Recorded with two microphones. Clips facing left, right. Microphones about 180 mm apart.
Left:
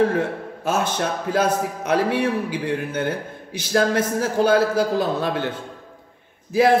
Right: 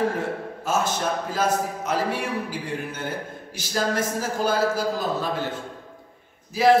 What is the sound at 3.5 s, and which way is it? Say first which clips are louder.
A man's voice: left 6 dB; 60° left (ahead or behind).